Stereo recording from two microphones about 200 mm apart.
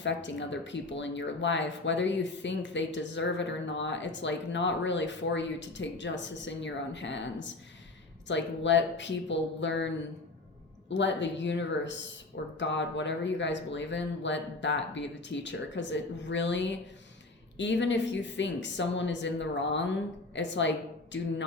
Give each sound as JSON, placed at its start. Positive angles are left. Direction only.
{"t": 0.0, "sound": "a woman's voice", "side_deg": 65}